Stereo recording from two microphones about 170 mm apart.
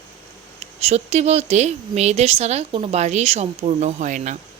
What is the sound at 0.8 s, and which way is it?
A woman's voice, 40° right (ahead or behind).